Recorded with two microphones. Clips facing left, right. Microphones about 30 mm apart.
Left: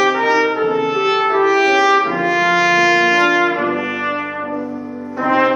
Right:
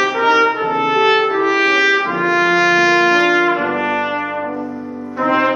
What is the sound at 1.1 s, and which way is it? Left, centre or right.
Trumpet, centre.